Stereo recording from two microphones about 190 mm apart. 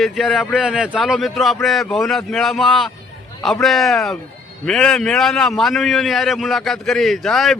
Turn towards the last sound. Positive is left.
turn(degrees=0)  # may be behind; listen again after turning